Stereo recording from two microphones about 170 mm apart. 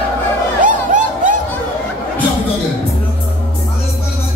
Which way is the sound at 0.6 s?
50° right (ahead or behind).